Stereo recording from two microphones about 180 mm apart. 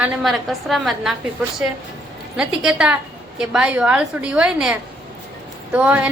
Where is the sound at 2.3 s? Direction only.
5° right (ahead or behind).